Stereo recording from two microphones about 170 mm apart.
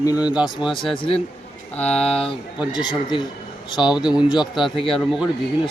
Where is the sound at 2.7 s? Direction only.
25° left (ahead or behind).